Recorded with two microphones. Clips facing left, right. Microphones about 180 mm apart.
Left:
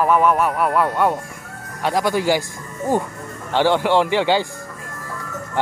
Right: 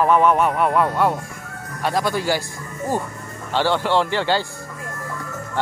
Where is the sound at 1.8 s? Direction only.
15° left (ahead or behind).